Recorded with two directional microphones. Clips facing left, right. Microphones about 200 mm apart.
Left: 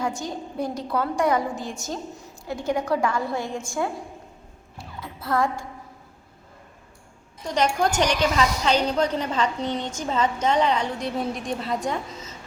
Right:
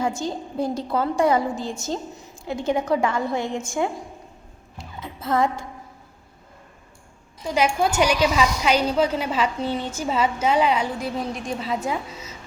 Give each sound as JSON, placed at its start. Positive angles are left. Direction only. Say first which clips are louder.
{"t": 0.0, "sound": "a woman's voice", "louder": "right 3 dB", "side_deg": -25}
{"t": 4.8, "sound": "music", "louder": "right 2 dB", "side_deg": -20}
{"t": 7.4, "sound": "a woman's voice", "louder": "right 1 dB", "side_deg": -5}